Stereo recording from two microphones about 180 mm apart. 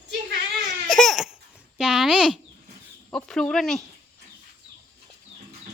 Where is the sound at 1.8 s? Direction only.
Centre (ahead or behind).